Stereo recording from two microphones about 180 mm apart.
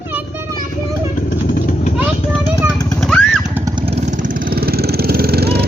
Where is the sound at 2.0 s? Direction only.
5° right (ahead or behind).